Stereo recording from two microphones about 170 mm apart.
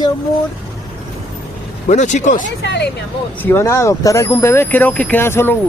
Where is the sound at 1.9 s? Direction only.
45° left (ahead or behind).